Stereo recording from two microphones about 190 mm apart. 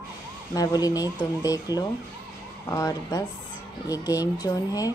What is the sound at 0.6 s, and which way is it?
Speech, 20° left (ahead or behind).